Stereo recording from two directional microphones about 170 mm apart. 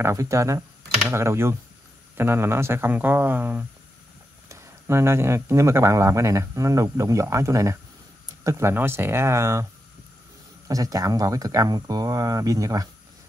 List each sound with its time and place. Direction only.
0.0 s speech: 15° right (ahead or behind)
10.7 s speech: 20° right (ahead or behind)